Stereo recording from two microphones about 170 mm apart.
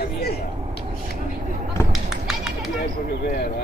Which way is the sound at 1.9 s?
Centre (ahead or behind).